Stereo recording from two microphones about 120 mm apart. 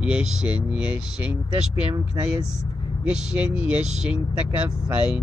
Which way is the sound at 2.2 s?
30° right (ahead or behind).